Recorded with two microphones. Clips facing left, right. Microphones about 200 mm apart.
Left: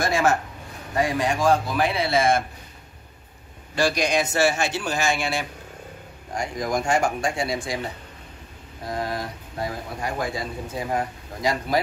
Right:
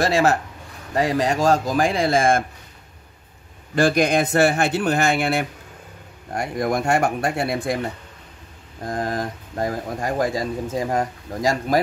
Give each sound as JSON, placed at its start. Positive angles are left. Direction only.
{"t": 0.0, "sound": "a man's voice", "side_deg": -35}
{"t": 3.7, "sound": "speech", "side_deg": -55}
{"t": 8.8, "sound": "speech", "side_deg": -45}